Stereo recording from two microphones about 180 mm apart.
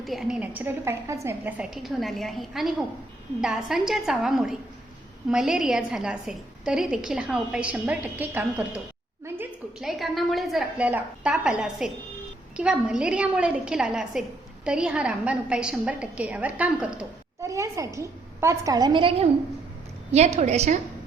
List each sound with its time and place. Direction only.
0.0 s a woman's voice: centre (ahead or behind)
9.2 s a sound: 10° right (ahead or behind)
10.0 s a woman's voice: centre (ahead or behind)
17.4 s a woman's voice: 15° right (ahead or behind); by 20.7 s 40° right (ahead or behind)